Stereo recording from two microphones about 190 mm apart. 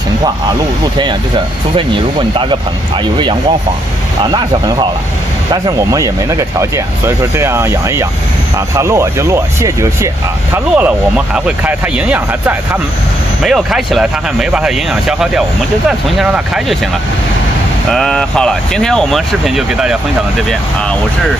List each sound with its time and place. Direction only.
1.8 s speech: 25° right (ahead or behind)
4.2 s speech: 25° right (ahead or behind)
8.7 s speech: 15° right (ahead or behind)
17.9 s speech: 5° left (ahead or behind)